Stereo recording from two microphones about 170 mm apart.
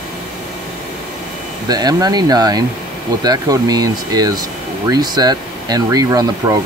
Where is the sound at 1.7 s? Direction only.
25° right (ahead or behind).